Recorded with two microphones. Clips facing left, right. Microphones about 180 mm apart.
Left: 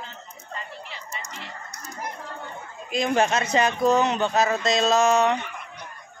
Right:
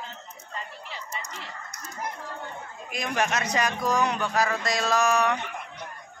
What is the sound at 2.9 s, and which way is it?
Speech, 25° left (ahead or behind).